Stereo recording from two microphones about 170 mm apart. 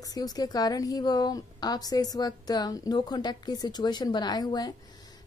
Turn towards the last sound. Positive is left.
turn(degrees=25)  # may be behind; listen again after turning